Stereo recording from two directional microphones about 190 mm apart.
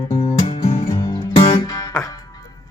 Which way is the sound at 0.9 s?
20° left (ahead or behind).